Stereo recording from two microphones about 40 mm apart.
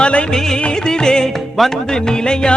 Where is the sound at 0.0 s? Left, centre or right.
Left.